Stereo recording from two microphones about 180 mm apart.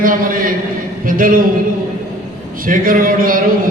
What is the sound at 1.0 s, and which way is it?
Speech, 50° right (ahead or behind).